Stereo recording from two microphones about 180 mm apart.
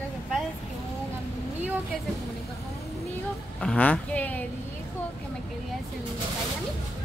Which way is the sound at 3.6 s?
5° left (ahead or behind).